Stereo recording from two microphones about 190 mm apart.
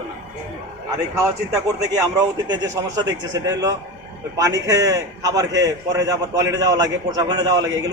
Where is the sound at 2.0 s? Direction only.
20° right (ahead or behind).